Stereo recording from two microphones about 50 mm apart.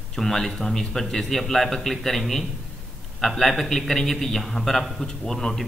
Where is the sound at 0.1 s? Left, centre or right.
Centre.